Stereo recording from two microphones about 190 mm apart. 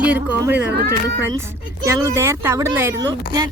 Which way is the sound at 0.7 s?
55° right (ahead or behind).